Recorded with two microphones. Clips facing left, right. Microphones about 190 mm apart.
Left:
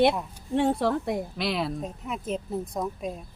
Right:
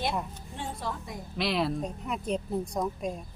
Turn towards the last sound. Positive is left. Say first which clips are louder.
# even
turn(degrees=0)  # may be behind; listen again after turning